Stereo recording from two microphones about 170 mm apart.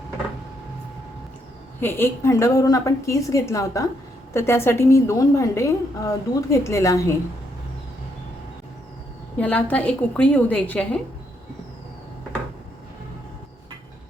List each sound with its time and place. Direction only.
1.8 s a woman's voice: 15° left (ahead or behind)
9.4 s a woman's voice: 10° left (ahead or behind)